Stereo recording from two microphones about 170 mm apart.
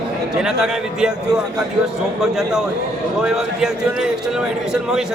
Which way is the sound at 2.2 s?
Centre (ahead or behind).